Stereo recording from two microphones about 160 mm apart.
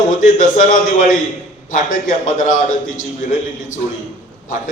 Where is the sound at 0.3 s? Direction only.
55° left (ahead or behind).